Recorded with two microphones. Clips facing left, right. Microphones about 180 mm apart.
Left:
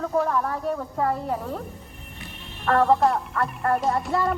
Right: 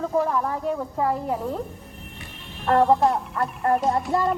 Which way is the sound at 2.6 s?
20° right (ahead or behind).